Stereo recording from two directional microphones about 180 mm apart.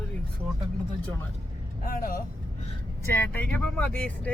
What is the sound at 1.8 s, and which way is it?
Speech, 55° left (ahead or behind).